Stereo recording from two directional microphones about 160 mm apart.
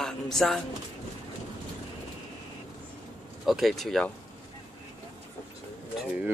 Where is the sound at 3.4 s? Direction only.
Centre (ahead or behind).